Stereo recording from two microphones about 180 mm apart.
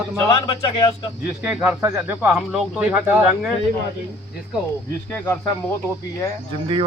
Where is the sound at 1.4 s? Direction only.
5° right (ahead or behind).